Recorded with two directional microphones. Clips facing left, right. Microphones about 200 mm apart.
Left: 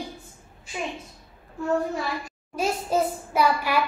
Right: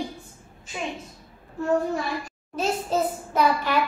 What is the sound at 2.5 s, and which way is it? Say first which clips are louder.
A child's voice: even; 10° left (ahead or behind).